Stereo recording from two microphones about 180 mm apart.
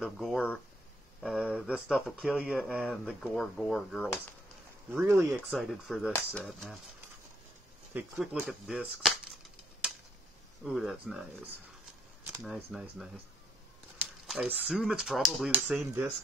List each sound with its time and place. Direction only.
0.0 s speech: centre (ahead or behind)
4.9 s speech: 10° right (ahead or behind)
7.9 s speech: 10° right (ahead or behind)
10.6 s speech: centre (ahead or behind)
14.2 s speech: 5° right (ahead or behind)